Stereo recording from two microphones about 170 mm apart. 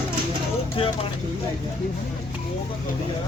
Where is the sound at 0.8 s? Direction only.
35° left (ahead or behind).